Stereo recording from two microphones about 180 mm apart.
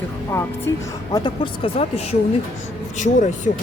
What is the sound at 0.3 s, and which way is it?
Speech, 15° left (ahead or behind).